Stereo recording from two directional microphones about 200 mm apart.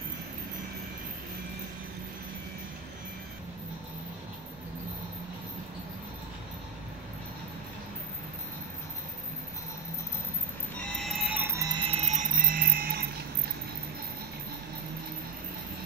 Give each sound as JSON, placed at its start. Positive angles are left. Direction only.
{"t": 10.8, "sound": "music", "side_deg": 5}
{"t": 11.9, "sound": "music", "side_deg": -35}